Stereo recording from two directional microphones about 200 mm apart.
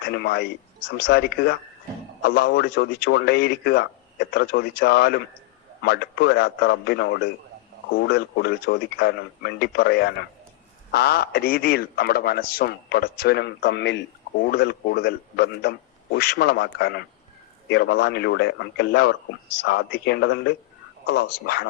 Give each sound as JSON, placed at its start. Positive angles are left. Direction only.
{"t": 0.0, "sound": "a man's voice", "side_deg": 55}